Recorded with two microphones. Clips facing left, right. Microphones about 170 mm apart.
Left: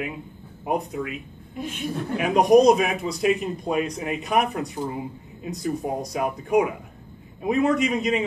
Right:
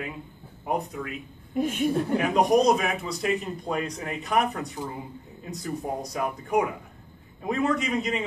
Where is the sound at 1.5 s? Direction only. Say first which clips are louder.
Right 6 dB; 50° right (ahead or behind).